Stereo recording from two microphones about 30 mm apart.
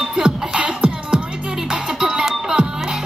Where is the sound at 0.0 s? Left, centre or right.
Right.